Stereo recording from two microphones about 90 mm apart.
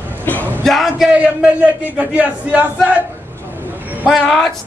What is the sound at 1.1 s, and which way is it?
Speech, 15° right (ahead or behind).